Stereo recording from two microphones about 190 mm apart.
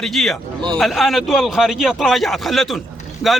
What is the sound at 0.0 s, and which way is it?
A man's voice, centre (ahead or behind).